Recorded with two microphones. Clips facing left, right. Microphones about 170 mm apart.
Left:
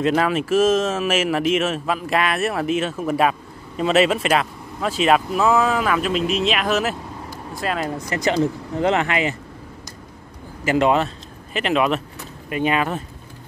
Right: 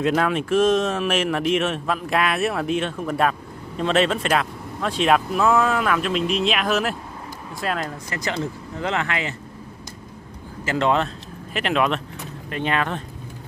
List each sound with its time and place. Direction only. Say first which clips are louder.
0.0 s speech: left 2 dB; centre (ahead or behind)
8.1 s speech: left 9 dB; 20° left (ahead or behind)
10.6 s speech: left 3 dB; 10° left (ahead or behind)